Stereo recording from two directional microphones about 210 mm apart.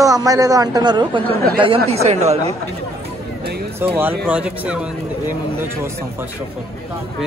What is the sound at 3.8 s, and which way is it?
A man's voice, 10° right (ahead or behind).